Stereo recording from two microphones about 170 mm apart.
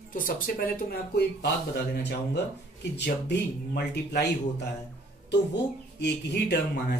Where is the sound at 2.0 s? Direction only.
80° left.